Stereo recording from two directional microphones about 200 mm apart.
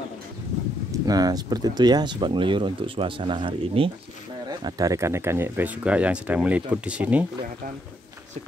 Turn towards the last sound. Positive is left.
turn(degrees=-5)  # may be behind; listen again after turning